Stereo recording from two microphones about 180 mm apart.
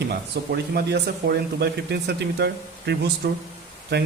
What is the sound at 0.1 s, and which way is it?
Speech, 60° right (ahead or behind).